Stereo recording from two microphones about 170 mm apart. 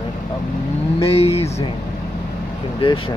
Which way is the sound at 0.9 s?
35° left (ahead or behind).